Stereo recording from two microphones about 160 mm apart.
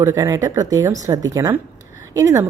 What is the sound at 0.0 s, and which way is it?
A woman's voice, 20° right (ahead or behind).